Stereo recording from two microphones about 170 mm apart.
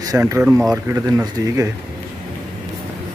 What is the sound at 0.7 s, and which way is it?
Speech, 20° right (ahead or behind).